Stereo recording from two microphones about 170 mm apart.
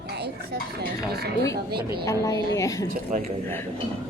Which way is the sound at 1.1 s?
65° right (ahead or behind).